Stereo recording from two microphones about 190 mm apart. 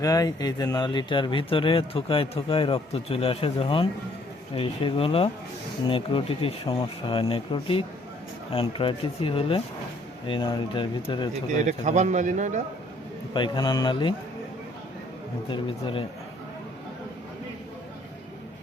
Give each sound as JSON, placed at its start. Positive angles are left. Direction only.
{"t": 0.0, "sound": "speech", "side_deg": 20}
{"t": 11.6, "sound": "a man's voice", "side_deg": -40}
{"t": 13.3, "sound": "speech", "side_deg": 25}
{"t": 15.4, "sound": "speech", "side_deg": 25}